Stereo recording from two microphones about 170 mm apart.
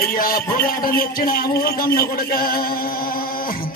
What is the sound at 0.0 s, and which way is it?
A man's voice, 55° left (ahead or behind).